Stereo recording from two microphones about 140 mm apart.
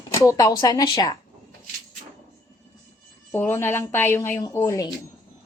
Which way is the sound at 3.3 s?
15° left (ahead or behind).